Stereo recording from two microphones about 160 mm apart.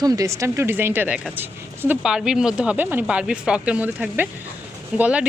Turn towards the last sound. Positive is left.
turn(degrees=-10)  # may be behind; listen again after turning